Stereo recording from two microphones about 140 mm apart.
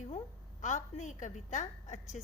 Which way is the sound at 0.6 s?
60° left (ahead or behind).